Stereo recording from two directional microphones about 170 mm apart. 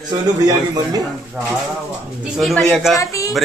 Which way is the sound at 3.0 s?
20° left (ahead or behind).